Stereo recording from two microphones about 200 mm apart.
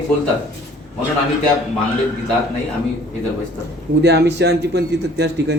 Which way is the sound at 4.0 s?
55° right (ahead or behind).